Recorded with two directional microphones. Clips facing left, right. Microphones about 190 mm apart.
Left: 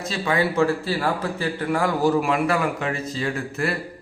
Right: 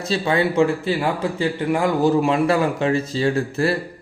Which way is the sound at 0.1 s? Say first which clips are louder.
Right 3 dB; 25° right (ahead or behind).